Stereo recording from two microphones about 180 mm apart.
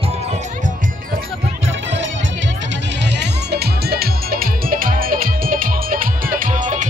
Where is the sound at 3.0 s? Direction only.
70° right (ahead or behind); by 6.8 s 45° right (ahead or behind).